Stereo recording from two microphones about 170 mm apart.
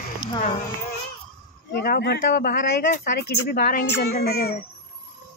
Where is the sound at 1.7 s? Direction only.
70° left (ahead or behind).